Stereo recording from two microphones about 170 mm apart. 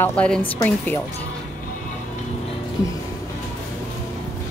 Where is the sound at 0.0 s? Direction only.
5° left (ahead or behind).